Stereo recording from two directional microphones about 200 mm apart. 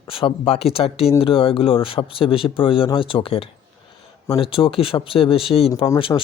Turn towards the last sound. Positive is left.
turn(degrees=25)  # may be behind; listen again after turning